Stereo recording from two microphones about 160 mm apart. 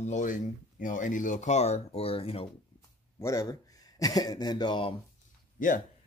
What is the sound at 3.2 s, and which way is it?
Speech, 20° left (ahead or behind).